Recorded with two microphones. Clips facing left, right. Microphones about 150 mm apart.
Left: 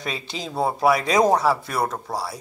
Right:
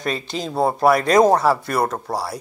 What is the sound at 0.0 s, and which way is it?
Speech, 50° right (ahead or behind).